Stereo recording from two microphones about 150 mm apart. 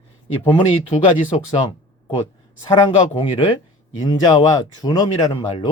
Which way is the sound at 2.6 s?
30° left (ahead or behind).